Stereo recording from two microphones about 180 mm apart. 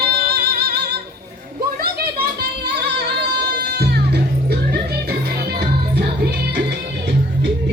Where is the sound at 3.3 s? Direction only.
65° right (ahead or behind).